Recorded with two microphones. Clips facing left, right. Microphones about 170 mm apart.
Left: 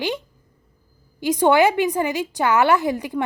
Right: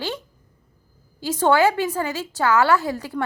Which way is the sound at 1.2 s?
15° left (ahead or behind).